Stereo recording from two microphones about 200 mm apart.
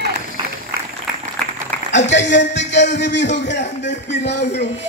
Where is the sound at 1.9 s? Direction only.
65° left (ahead or behind).